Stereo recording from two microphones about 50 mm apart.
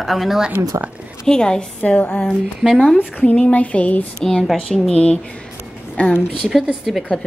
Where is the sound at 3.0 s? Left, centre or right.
Left.